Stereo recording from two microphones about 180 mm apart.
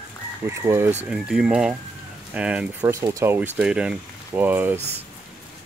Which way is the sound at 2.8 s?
20° right (ahead or behind).